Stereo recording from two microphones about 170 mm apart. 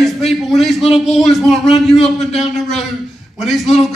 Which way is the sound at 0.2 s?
Centre (ahead or behind).